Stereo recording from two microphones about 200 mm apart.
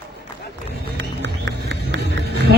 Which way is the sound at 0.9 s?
60° right (ahead or behind).